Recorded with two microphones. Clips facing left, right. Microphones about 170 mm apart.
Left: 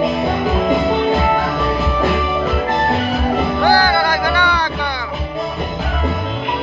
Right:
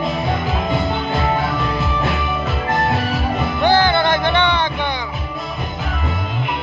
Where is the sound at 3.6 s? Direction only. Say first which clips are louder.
Right 1 dB; 20° right (ahead or behind).